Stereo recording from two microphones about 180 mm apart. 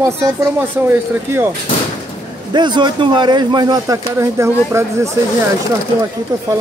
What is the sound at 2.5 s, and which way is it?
Speech, 25° right (ahead or behind).